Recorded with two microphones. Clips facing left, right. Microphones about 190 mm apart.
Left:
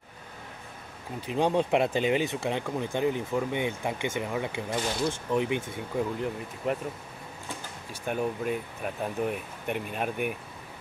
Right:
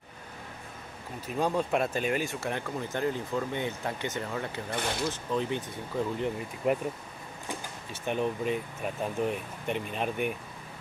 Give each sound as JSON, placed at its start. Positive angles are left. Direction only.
{"t": 1.3, "sound": "speech", "side_deg": 30}
{"t": 2.1, "sound": "speech", "side_deg": 20}
{"t": 4.6, "sound": "speech", "side_deg": -60}
{"t": 5.3, "sound": "speech", "side_deg": 15}
{"t": 5.9, "sound": "speech", "side_deg": 0}
{"t": 7.9, "sound": "speech", "side_deg": 5}